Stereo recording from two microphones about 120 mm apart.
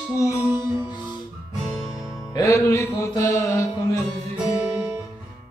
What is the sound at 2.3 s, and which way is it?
Music, 25° left (ahead or behind).